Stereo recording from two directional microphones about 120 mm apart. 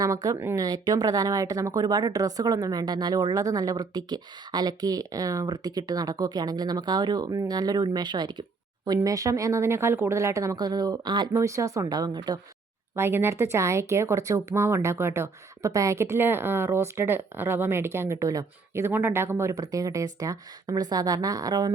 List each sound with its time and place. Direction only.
0.0 s speech: 30° right (ahead or behind)
0.3 s speech: 20° right (ahead or behind)
0.6 s speech: 35° right (ahead or behind)
11.3 s speech: 25° right (ahead or behind)
13.0 s speech: 20° right (ahead or behind)